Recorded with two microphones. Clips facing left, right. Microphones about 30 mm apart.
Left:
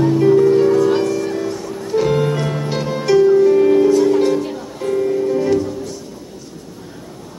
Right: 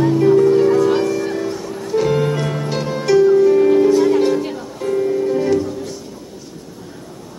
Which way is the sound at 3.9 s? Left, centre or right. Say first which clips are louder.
Even; centre.